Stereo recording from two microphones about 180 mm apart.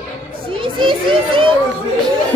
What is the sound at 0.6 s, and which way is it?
Children playing, 30° right (ahead or behind).